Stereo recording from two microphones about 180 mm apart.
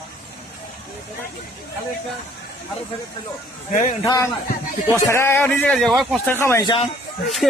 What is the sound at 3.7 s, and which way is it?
Speech, 45° left (ahead or behind).